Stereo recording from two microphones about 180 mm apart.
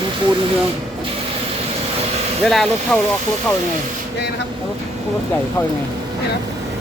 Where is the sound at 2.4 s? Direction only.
Centre (ahead or behind).